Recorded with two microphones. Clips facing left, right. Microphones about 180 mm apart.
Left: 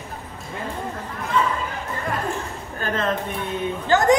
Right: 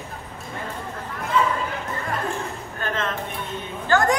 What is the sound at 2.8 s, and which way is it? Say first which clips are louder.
Speech: left 4 dB; 35° left (ahead or behind).